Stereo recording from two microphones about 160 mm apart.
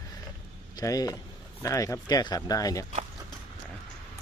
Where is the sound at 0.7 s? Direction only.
25° left (ahead or behind).